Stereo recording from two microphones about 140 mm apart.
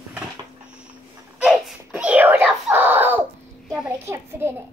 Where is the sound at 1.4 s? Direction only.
5° right (ahead or behind).